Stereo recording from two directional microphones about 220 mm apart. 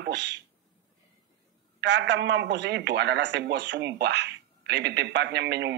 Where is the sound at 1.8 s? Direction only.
55° right (ahead or behind).